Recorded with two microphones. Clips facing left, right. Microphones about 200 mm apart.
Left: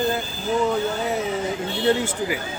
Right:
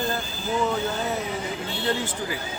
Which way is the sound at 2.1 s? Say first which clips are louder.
Left 5 dB; 15° left (ahead or behind).